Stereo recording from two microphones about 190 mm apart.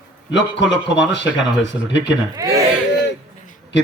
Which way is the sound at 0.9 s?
70° left (ahead or behind).